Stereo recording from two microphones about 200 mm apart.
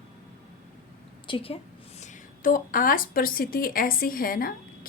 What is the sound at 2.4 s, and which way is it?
A woman's voice, 45° left (ahead or behind).